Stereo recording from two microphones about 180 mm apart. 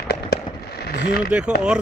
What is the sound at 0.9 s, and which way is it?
Speech, 55° left (ahead or behind).